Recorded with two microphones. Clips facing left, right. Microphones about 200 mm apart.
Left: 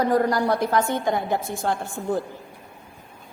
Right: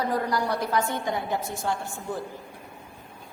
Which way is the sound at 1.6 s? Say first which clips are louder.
Left 4 dB; 60° left (ahead or behind).